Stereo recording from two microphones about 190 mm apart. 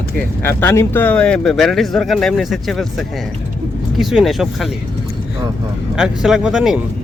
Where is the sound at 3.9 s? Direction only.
Centre (ahead or behind).